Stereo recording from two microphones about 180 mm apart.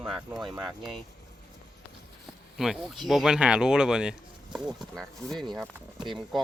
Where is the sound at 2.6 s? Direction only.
Centre (ahead or behind).